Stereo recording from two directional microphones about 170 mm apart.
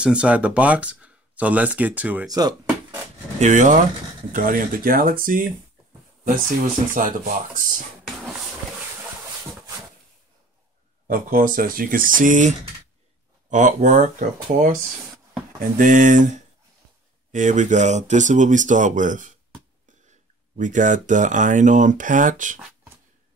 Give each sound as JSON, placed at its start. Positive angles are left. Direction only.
{"t": 0.0, "sound": "speech", "side_deg": -5}
{"t": 2.2, "sound": "a sound", "side_deg": -20}
{"t": 3.3, "sound": "speech", "side_deg": -45}
{"t": 6.9, "sound": "speech", "side_deg": -55}
{"t": 11.1, "sound": "speech", "side_deg": -55}
{"t": 15.8, "sound": "speech", "side_deg": -50}